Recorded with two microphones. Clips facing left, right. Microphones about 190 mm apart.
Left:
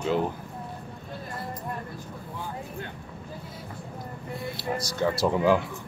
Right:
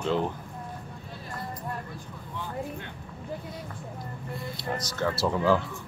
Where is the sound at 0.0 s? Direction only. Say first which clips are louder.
Left 1 dB; 5° left (ahead or behind).